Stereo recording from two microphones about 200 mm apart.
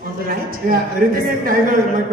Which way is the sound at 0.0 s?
45° right (ahead or behind).